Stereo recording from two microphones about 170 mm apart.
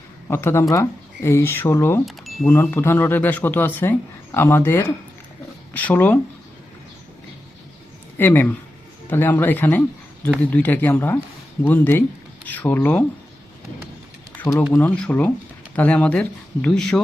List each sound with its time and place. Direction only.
0.3 s speech: 15° left (ahead or behind)
2.0 s wind chime: centre (ahead or behind)
2.5 s speech: 15° left (ahead or behind)
8.2 s speech: 15° left (ahead or behind)
14.7 s speech: 10° left (ahead or behind)